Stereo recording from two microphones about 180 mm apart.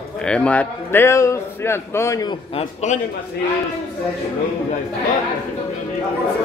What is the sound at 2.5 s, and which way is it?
Speech, 40° left (ahead or behind).